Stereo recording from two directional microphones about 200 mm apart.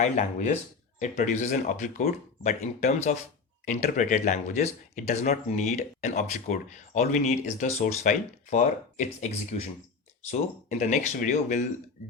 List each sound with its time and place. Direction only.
0.0 s speech: 35° left (ahead or behind)
10.7 s speech: 35° left (ahead or behind)